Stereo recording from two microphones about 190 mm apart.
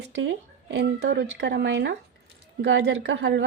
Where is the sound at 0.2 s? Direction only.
75° right (ahead or behind).